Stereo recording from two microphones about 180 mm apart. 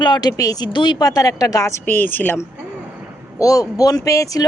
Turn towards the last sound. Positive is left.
turn(degrees=20)  # may be behind; listen again after turning